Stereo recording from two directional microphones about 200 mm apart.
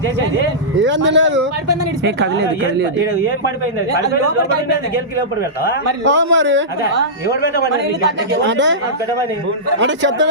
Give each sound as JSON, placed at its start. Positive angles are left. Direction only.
{"t": 0.8, "sound": "speech", "side_deg": -65}
{"t": 6.1, "sound": "speech", "side_deg": -65}
{"t": 8.3, "sound": "speech", "side_deg": -65}
{"t": 9.8, "sound": "speech", "side_deg": -65}